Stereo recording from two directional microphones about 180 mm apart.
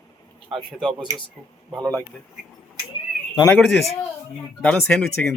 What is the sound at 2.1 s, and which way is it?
Speech, 5° left (ahead or behind).